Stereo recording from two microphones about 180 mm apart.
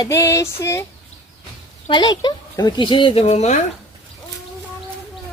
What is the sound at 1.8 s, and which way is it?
Speech, 25° left (ahead or behind).